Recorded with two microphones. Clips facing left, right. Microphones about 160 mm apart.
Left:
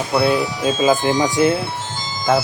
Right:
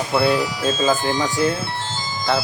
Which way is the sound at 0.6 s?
15° left (ahead or behind).